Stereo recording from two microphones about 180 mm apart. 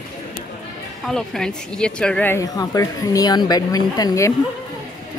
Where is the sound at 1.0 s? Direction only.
5° left (ahead or behind).